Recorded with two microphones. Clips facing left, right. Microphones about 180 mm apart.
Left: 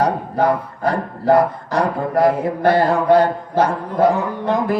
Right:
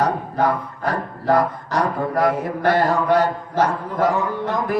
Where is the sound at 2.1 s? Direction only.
25° left (ahead or behind).